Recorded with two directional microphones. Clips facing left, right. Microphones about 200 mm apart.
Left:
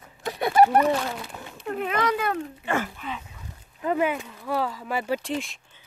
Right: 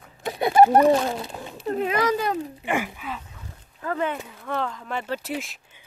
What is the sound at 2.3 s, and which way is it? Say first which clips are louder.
Speech: right 1 dB; 15° right (ahead or behind).